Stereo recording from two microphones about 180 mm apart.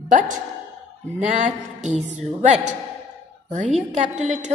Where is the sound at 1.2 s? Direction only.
40° right (ahead or behind).